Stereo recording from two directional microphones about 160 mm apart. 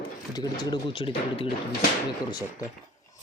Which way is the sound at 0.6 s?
30° left (ahead or behind).